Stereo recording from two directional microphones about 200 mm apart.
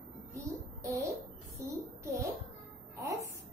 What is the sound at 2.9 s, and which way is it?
Music, 15° right (ahead or behind).